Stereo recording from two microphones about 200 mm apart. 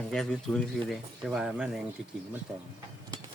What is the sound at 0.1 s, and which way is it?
Speech, centre (ahead or behind).